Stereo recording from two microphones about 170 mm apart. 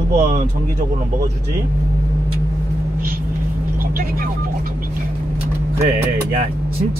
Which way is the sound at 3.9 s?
55° right (ahead or behind).